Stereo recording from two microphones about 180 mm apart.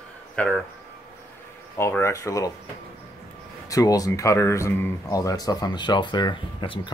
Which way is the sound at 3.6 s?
20° left (ahead or behind).